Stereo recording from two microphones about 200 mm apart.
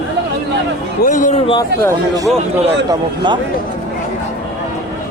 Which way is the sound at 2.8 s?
20° right (ahead or behind).